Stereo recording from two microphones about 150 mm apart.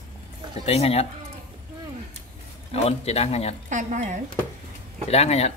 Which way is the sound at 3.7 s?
55° right (ahead or behind).